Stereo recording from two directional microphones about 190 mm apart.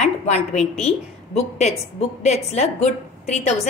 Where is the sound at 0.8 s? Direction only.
35° left (ahead or behind).